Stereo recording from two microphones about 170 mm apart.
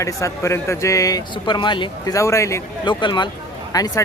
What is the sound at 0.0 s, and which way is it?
Speech, 20° left (ahead or behind).